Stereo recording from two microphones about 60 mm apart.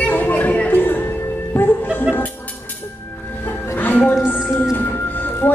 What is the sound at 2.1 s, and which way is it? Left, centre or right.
Music, centre.